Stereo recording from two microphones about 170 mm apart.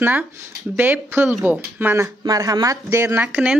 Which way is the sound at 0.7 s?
10° right (ahead or behind).